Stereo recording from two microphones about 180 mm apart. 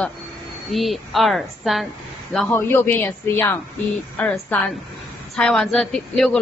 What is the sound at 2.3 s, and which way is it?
A woman's voice, 10° left (ahead or behind).